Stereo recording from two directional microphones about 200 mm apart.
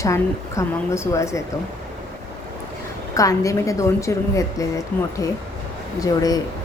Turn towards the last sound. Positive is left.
turn(degrees=20)  # may be behind; listen again after turning